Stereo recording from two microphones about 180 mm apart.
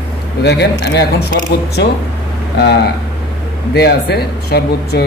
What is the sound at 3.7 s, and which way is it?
Speech, 65° left (ahead or behind).